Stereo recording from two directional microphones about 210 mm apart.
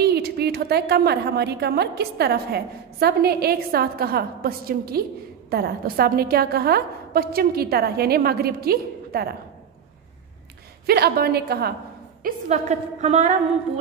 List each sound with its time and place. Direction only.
0.0 s a woman's voice: 50° right (ahead or behind)
10.9 s a woman's voice: 50° right (ahead or behind)
12.2 s a woman's voice: 40° right (ahead or behind)